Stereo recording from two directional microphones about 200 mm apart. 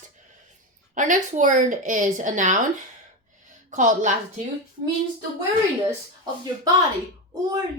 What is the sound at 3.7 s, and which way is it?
Speech, 40° right (ahead or behind).